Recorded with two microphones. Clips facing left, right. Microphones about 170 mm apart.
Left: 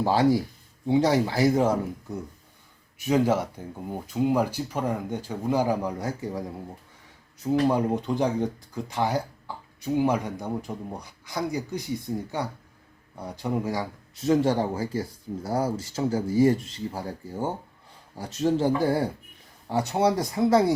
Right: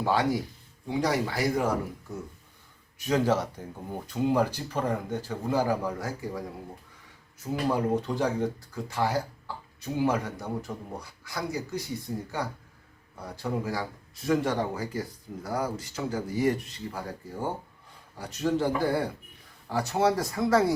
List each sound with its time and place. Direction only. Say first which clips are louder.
0.0 s speech: left 5 dB; 30° left (ahead or behind)
3.0 s speech: left 3 dB; 10° left (ahead or behind)
7.7 s speech: left 2 dB; 15° left (ahead or behind)
13.2 s speech: left 3 dB; 15° left (ahead or behind)
14.3 s speech: left 4 dB; 30° left (ahead or behind)